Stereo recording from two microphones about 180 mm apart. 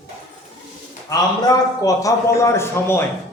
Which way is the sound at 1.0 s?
20° left (ahead or behind).